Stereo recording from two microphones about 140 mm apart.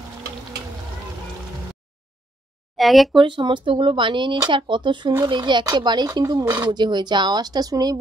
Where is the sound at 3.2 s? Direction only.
35° right (ahead or behind).